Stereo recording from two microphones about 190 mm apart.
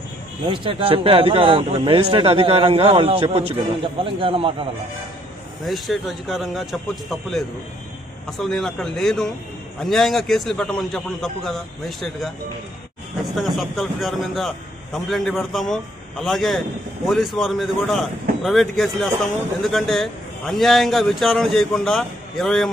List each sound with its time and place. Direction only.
0.5 s a man's voice: 25° right (ahead or behind)
5.7 s speech: centre (ahead or behind)
13.3 s speech: centre (ahead or behind)